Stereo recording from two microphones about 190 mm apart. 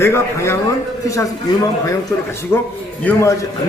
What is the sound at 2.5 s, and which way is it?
Speech, 10° left (ahead or behind).